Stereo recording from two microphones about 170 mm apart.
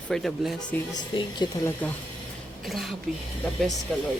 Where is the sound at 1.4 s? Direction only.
25° left (ahead or behind).